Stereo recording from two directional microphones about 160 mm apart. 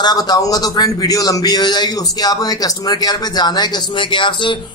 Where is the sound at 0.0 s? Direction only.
25° left (ahead or behind).